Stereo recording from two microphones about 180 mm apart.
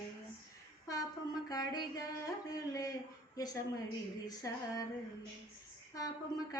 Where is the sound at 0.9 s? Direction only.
20° left (ahead or behind).